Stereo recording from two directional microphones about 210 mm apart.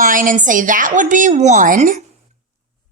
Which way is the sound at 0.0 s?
40° right (ahead or behind).